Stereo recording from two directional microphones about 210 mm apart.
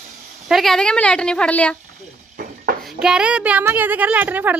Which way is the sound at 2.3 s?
45° right (ahead or behind).